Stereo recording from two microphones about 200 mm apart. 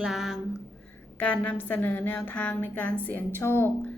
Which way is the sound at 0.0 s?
Centre (ahead or behind).